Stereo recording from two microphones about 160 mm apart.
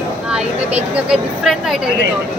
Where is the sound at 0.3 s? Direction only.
5° right (ahead or behind).